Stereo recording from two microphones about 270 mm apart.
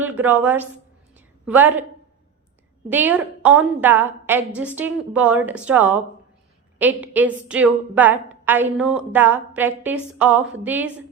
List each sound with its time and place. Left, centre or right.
0.0 s speech: centre
1.1 s a sound: centre
2.9 s a woman's voice: centre